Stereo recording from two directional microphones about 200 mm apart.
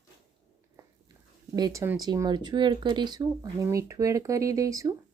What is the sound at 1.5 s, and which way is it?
Speech, 20° right (ahead or behind).